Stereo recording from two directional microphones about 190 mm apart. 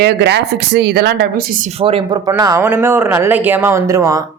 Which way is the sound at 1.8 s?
30° right (ahead or behind).